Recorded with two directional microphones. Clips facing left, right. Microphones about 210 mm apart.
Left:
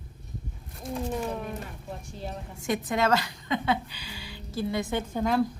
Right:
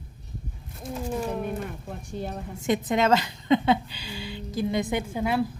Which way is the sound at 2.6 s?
20° right (ahead or behind).